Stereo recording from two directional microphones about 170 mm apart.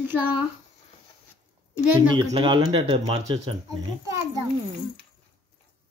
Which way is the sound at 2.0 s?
30° right (ahead or behind).